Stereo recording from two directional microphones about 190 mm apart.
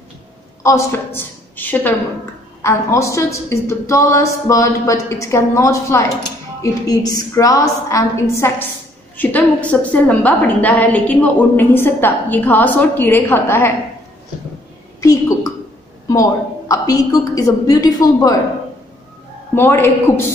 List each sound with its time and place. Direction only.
0.7 s a woman's voice: 15° left (ahead or behind)
15.0 s a woman's voice: 15° left (ahead or behind)
19.5 s a woman's voice: 10° left (ahead or behind)